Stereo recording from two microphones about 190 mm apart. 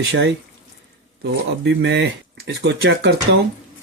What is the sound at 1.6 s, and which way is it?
Speech, 70° right (ahead or behind).